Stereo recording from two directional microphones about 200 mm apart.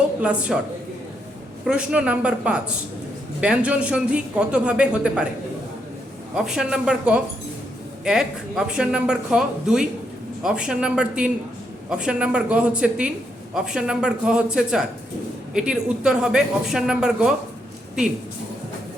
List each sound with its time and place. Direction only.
0.2 s a woman's voice: 5° right (ahead or behind)
1.6 s a woman's voice: 5° right (ahead or behind)
6.3 s a woman's voice: 5° right (ahead or behind)